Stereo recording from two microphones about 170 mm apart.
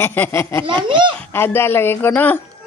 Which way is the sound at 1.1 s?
15° left (ahead or behind).